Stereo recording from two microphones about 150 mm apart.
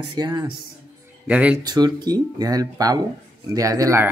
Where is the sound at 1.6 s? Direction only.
25° right (ahead or behind).